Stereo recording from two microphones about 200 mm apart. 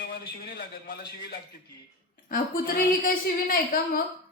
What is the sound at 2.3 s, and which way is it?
A woman's voice, 45° left (ahead or behind).